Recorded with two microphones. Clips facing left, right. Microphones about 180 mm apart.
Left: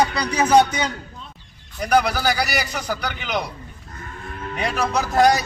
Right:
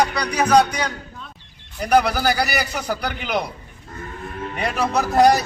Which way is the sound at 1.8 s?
5° right (ahead or behind).